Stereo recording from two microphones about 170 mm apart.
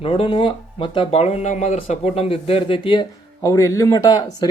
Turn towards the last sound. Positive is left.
turn(degrees=25)  # may be behind; listen again after turning